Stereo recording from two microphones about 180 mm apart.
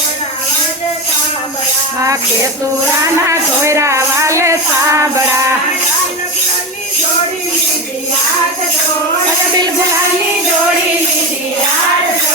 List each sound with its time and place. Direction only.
3.2 s music: 15° right (ahead or behind)